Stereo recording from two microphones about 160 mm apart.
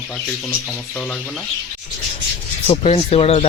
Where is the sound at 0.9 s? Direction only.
5° left (ahead or behind).